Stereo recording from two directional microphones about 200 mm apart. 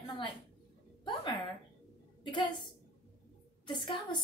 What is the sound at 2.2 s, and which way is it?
Speech, 25° left (ahead or behind).